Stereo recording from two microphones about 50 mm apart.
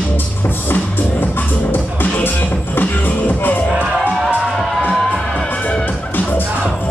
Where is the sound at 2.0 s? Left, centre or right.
Left.